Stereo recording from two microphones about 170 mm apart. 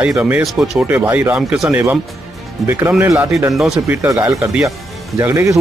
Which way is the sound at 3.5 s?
Centre (ahead or behind).